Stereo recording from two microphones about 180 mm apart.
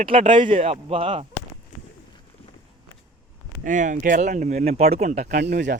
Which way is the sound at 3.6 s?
45° right (ahead or behind).